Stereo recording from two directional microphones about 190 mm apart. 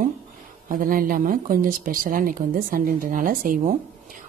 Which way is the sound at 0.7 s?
45° right (ahead or behind).